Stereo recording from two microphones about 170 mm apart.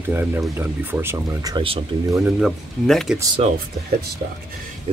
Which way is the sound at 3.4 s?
40° right (ahead or behind).